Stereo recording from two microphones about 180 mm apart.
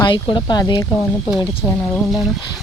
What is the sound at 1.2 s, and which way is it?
Speech, 5° right (ahead or behind).